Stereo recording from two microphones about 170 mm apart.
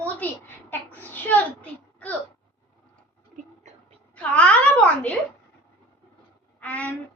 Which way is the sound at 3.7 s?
45° right (ahead or behind).